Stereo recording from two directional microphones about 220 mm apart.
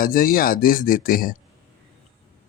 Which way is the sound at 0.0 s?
40° left (ahead or behind).